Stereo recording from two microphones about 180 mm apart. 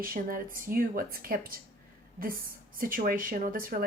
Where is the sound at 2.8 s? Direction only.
50° right (ahead or behind).